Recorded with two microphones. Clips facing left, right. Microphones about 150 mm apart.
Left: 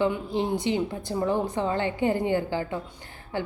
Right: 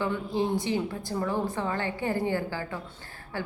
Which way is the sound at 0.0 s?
20° left (ahead or behind).